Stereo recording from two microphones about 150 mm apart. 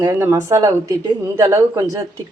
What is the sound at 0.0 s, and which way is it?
Speech, 20° right (ahead or behind).